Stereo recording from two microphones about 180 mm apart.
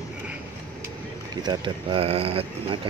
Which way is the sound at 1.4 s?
25° right (ahead or behind).